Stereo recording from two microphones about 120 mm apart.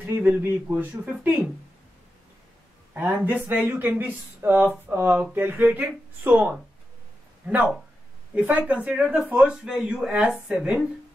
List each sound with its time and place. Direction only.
0.0 s speech: 15° right (ahead or behind)
2.9 s a sound: 15° right (ahead or behind)
3.2 s speech: 15° right (ahead or behind)